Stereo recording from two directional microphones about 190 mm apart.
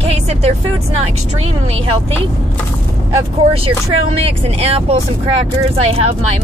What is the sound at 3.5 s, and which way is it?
Speech, 30° right (ahead or behind).